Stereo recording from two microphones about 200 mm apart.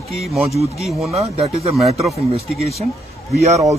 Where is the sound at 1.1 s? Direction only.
30° right (ahead or behind).